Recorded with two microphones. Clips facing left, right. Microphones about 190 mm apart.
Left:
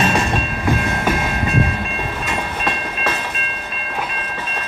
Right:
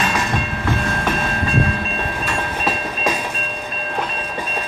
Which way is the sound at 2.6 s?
10° right (ahead or behind).